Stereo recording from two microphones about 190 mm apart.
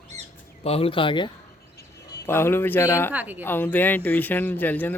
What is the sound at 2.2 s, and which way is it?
Speech, 10° left (ahead or behind).